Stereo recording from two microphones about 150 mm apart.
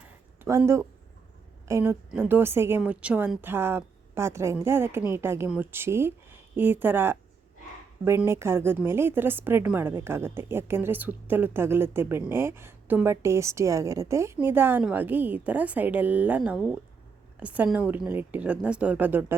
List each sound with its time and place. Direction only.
0.4 s a woman's voice: 20° right (ahead or behind)